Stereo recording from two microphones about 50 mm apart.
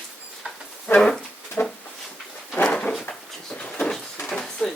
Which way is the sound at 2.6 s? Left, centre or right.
Centre.